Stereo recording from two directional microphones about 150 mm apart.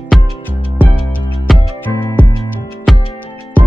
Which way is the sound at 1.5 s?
Centre (ahead or behind).